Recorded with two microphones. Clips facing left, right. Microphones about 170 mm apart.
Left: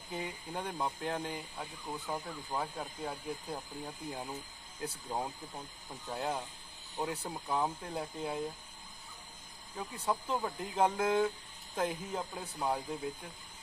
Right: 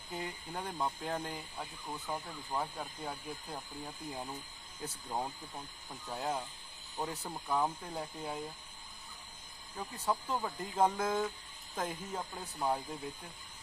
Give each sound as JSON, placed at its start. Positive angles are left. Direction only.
{"t": 0.1, "sound": "speech", "side_deg": 5}
{"t": 10.3, "sound": "speech", "side_deg": 0}